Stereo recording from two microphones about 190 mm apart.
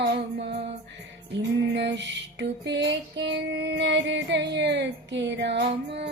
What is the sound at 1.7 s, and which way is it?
Music, 65° right (ahead or behind).